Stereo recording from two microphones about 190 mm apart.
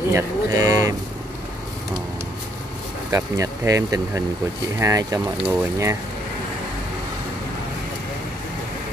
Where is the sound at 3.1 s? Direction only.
15° right (ahead or behind).